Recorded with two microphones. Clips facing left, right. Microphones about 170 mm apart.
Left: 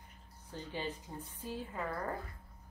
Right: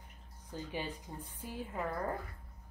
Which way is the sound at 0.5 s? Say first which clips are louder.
Even; 10° right (ahead or behind).